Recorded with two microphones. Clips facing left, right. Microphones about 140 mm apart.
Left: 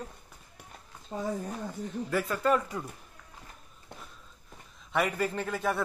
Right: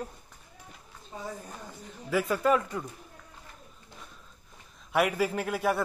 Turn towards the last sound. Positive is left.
turn(degrees=-5)  # may be behind; listen again after turning